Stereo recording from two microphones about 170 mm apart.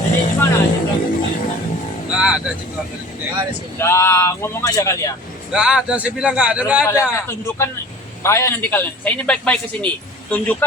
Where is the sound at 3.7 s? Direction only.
15° left (ahead or behind).